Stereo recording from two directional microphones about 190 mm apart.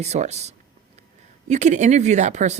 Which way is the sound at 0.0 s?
35° right (ahead or behind).